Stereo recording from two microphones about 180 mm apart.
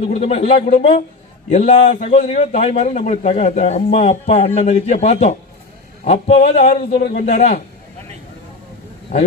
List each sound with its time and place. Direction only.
0.1 s a man's voice: 35° left (ahead or behind)